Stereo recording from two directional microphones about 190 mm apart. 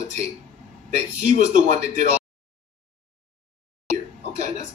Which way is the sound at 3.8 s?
40° right (ahead or behind).